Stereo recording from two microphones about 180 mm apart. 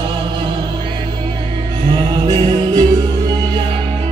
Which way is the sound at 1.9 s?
20° right (ahead or behind).